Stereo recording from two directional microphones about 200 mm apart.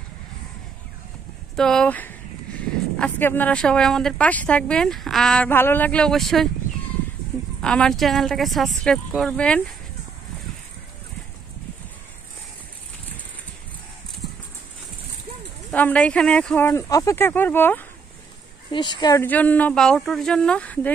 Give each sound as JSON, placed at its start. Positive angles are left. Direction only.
{"t": 1.6, "sound": "speech", "side_deg": 5}
{"t": 7.6, "sound": "speech", "side_deg": 5}
{"t": 15.7, "sound": "speech", "side_deg": 5}
{"t": 18.7, "sound": "speech", "side_deg": 20}
{"t": 19.2, "sound": "speech", "side_deg": 10}